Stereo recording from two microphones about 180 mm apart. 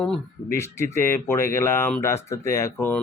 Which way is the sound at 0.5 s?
15° left (ahead or behind).